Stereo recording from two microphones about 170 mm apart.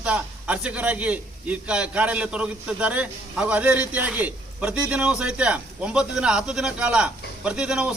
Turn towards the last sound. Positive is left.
turn(degrees=-5)  # may be behind; listen again after turning